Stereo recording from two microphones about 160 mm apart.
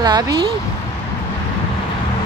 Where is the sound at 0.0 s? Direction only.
25° right (ahead or behind).